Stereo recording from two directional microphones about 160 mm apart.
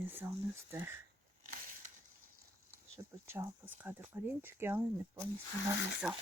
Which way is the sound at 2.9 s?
15° right (ahead or behind).